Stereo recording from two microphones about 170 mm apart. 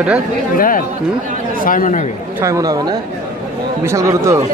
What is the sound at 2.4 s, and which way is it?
Speech, 20° right (ahead or behind).